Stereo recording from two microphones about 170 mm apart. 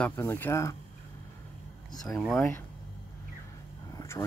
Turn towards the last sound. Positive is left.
turn(degrees=20)  # may be behind; listen again after turning